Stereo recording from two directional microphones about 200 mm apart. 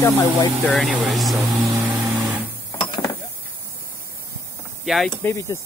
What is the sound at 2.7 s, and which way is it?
Mechanisms, 25° left (ahead or behind).